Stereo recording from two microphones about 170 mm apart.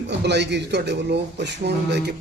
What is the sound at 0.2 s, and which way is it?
A man's voice, 90° right.